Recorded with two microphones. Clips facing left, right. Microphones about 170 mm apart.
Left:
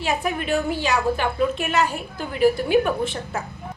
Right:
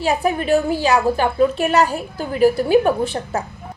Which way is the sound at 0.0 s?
35° right (ahead or behind).